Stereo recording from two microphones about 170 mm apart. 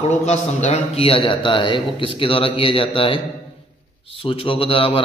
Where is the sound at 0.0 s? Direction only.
40° left (ahead or behind).